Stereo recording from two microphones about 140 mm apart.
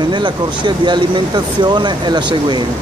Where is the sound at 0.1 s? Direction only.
35° right (ahead or behind).